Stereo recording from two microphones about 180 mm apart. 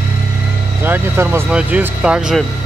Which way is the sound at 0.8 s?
10° right (ahead or behind).